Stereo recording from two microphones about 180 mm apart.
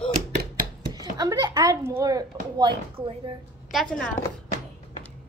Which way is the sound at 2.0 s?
20° right (ahead or behind).